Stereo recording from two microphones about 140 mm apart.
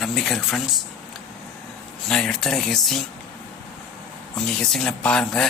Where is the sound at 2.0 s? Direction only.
5° left (ahead or behind).